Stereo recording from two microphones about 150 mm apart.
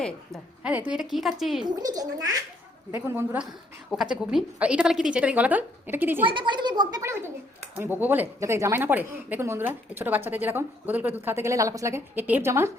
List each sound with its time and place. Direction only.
0.6 s a woman's voice: 10° right (ahead or behind)
1.6 s a child's voice: 25° right (ahead or behind)
3.9 s speech: 5° right (ahead or behind)
6.2 s speech: 30° right (ahead or behind)
7.0 s speech: 15° right (ahead or behind)